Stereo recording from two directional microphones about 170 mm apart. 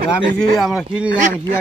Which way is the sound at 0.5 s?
Centre (ahead or behind).